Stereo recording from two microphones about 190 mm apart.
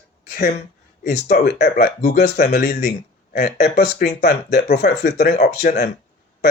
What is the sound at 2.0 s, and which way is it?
Speech, 40° left (ahead or behind).